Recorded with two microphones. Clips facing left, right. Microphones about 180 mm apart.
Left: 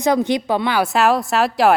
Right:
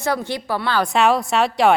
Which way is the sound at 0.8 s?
Centre (ahead or behind).